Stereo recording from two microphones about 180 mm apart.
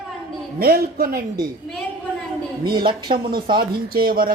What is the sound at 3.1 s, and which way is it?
Speech, 55° right (ahead or behind).